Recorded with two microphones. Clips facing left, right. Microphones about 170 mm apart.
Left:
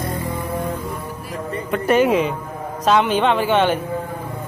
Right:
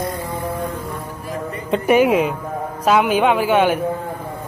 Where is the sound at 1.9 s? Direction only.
10° right (ahead or behind).